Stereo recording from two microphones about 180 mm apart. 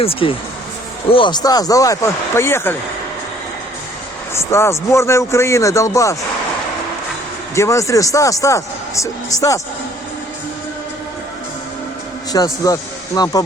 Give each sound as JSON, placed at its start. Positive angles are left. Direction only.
{"t": 0.0, "sound": "speech", "side_deg": 30}
{"t": 4.4, "sound": "a man's voice", "side_deg": 15}
{"t": 7.5, "sound": "a man's voice", "side_deg": 15}
{"t": 12.3, "sound": "speech", "side_deg": 20}